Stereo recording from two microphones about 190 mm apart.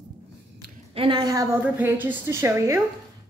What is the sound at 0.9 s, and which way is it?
A woman's voice, 30° right (ahead or behind).